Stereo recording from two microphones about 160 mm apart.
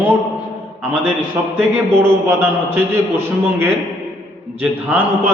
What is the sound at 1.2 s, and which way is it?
A man's voice, 15° right (ahead or behind).